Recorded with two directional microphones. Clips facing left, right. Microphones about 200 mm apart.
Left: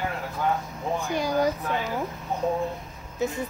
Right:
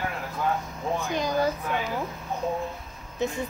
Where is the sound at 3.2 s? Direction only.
5° left (ahead or behind).